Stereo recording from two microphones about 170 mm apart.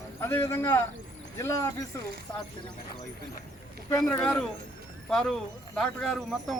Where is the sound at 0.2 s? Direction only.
15° left (ahead or behind).